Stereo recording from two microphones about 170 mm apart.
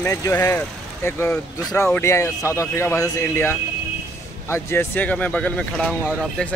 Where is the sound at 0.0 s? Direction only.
15° left (ahead or behind).